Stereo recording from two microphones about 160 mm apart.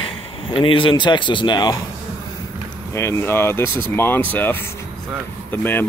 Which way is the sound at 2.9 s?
15° left (ahead or behind).